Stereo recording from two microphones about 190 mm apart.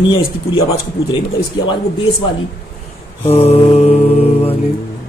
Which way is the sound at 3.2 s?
30° left (ahead or behind).